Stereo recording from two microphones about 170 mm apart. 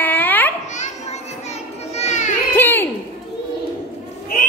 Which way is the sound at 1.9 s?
45° left (ahead or behind).